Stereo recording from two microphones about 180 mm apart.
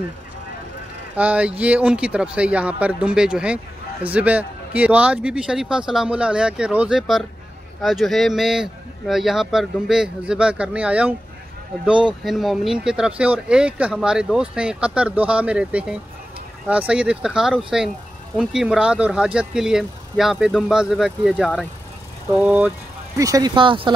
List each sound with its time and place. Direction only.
1.1 s speech: 10° right (ahead or behind)
23.1 s speech: 20° right (ahead or behind)